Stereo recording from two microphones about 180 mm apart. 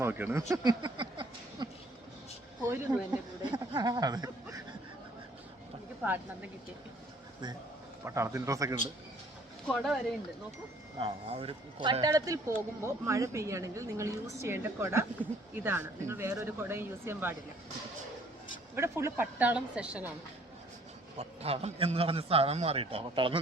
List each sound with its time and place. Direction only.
0.0 s speech: 10° right (ahead or behind)
0.5 s a sound: 20° right (ahead or behind)
2.6 s speech: 10° right (ahead or behind)
3.5 s speech: 25° right (ahead or behind)
6.0 s speech: 10° right (ahead or behind)
8.0 s speech: 15° right (ahead or behind)
9.6 s speech: centre (ahead or behind)
11.0 s speech: 30° right (ahead or behind); by 17.3 s 10° right (ahead or behind)
18.8 s speech: 15° right (ahead or behind)
21.2 s a man's voice: 35° right (ahead or behind)